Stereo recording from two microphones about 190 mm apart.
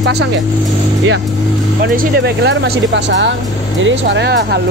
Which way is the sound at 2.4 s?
65° right (ahead or behind).